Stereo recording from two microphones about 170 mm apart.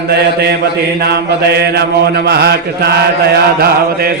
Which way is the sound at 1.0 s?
70° right (ahead or behind).